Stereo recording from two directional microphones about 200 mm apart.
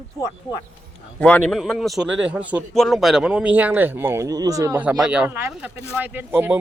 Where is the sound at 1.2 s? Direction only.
5° left (ahead or behind).